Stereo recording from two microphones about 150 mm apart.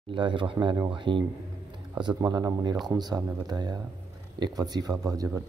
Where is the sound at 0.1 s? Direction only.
35° right (ahead or behind).